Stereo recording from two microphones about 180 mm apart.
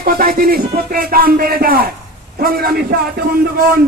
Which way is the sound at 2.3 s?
55° right (ahead or behind).